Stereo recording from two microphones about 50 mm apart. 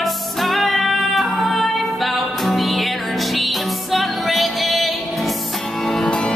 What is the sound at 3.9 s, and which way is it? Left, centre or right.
Music, centre.